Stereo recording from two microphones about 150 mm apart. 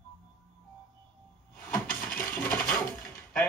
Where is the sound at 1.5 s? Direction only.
10° left (ahead or behind).